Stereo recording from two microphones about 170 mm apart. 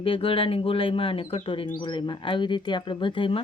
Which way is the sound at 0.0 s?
30° left (ahead or behind).